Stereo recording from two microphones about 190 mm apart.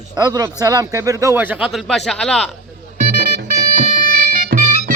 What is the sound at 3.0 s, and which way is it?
Music, 50° right (ahead or behind).